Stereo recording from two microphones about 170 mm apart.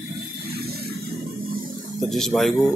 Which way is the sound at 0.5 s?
65° right (ahead or behind).